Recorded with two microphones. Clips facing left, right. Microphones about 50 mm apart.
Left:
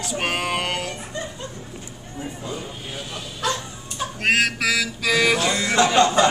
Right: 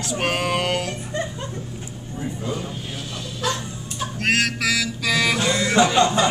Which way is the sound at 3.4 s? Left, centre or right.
Centre.